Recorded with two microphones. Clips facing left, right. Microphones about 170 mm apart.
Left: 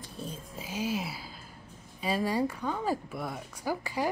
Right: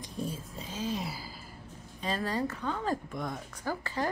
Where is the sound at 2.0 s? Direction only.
10° left (ahead or behind).